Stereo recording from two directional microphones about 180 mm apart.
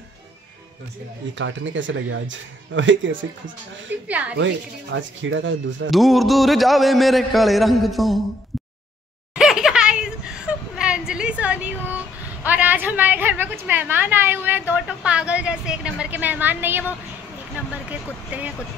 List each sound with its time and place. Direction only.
1.4 s speech: 90° right
4.1 s speech: 5° right (ahead or behind)
4.4 s speech: 90° right
5.9 s a man's voice: centre (ahead or behind)
9.3 s laughter: 5° right (ahead or behind)
12.4 s a woman's voice: 10° right (ahead or behind)